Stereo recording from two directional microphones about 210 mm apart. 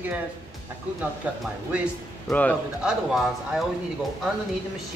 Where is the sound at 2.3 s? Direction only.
5° left (ahead or behind).